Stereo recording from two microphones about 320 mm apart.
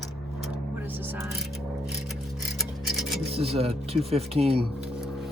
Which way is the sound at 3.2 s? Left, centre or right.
Centre.